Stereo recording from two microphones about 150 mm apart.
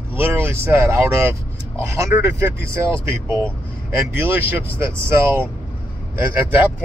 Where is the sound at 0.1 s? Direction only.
15° right (ahead or behind).